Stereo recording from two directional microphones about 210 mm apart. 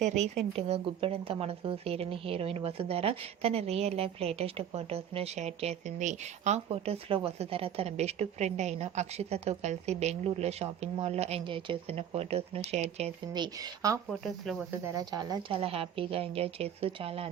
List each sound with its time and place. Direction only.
0.5 s a woman's voice: 25° right (ahead or behind)
14.1 s a woman's voice: centre (ahead or behind); by 17.2 s 25° right (ahead or behind)